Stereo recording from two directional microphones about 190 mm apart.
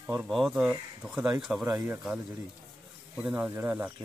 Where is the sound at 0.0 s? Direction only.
5° right (ahead or behind).